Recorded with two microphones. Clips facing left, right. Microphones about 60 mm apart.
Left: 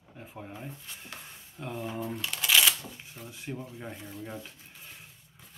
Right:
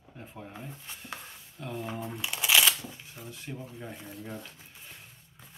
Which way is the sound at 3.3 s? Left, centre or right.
Centre.